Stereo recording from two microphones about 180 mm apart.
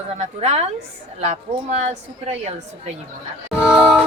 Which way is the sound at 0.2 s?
35° right (ahead or behind).